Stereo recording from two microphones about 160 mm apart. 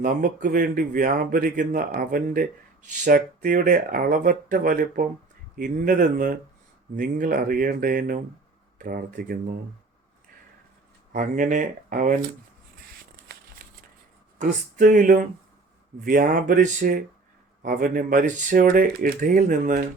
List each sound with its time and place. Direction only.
0.0 s speech: 55° right (ahead or behind)
11.1 s speech: 55° right (ahead or behind)
13.6 s a sound: 65° right (ahead or behind)
14.3 s speech: 50° right (ahead or behind)